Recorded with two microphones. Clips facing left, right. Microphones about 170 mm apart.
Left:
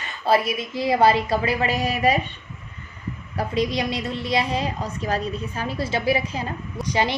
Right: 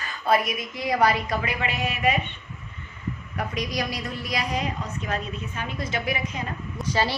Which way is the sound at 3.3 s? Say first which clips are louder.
Left 6 dB; 30° left (ahead or behind).